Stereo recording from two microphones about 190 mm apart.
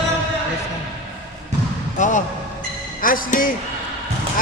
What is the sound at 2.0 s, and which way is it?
Speech, 40° left (ahead or behind).